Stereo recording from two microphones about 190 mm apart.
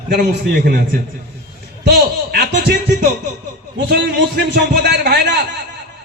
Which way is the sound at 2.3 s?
60° right (ahead or behind).